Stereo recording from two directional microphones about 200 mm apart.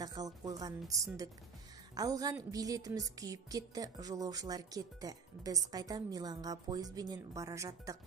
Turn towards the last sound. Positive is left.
turn(degrees=-15)  # may be behind; listen again after turning